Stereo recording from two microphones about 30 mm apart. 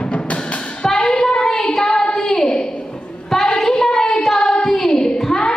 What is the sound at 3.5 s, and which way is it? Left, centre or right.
Child singing, left.